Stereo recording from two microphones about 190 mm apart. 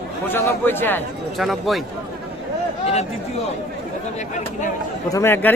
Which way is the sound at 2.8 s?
35° left (ahead or behind).